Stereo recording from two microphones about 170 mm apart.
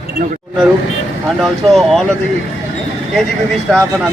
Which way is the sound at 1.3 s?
Centre (ahead or behind).